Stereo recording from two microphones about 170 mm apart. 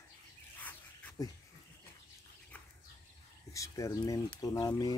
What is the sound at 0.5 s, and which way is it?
Bird, 10° left (ahead or behind).